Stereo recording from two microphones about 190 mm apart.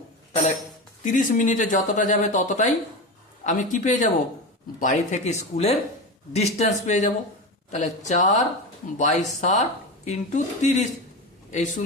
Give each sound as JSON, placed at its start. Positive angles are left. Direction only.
{"t": 1.0, "sound": "speech", "side_deg": 45}